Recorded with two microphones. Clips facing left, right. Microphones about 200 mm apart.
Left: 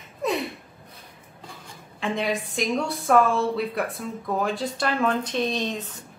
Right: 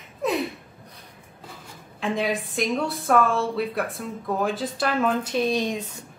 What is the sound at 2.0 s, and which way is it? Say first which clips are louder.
A woman's voice: right 1 dB; centre (ahead or behind).